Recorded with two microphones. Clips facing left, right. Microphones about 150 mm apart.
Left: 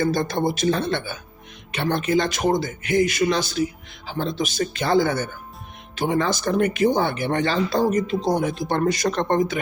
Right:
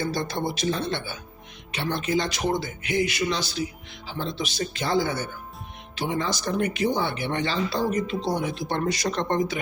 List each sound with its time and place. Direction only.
0.0 s speech: 50° left (ahead or behind)